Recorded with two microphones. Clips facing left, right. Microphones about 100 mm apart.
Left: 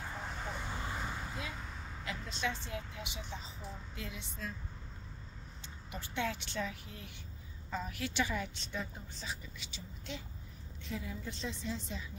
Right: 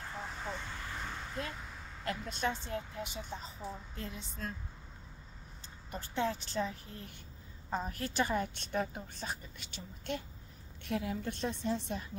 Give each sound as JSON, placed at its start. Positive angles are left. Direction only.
{"t": 0.0, "sound": "vehicle", "side_deg": 0}
{"t": 0.7, "sound": "vehicle", "side_deg": 20}
{"t": 1.0, "sound": "vehicle", "side_deg": 10}
{"t": 2.2, "sound": "a woman's voice", "side_deg": -50}
{"t": 5.9, "sound": "a woman's voice", "side_deg": -40}